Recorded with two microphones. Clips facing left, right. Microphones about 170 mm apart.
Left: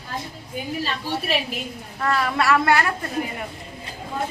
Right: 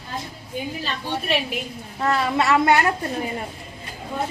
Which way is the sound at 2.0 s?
25° right (ahead or behind).